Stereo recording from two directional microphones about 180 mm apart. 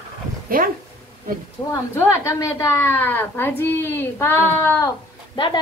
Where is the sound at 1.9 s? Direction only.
15° left (ahead or behind).